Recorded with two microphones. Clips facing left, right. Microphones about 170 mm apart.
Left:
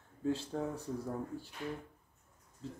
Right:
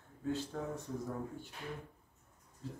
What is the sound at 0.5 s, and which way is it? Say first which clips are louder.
Chime: left 4 dB; 40° left (ahead or behind).